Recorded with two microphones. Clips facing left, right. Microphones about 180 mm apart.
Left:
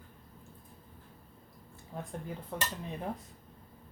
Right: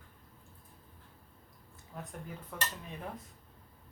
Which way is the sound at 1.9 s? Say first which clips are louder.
Left 4 dB; 30° left (ahead or behind).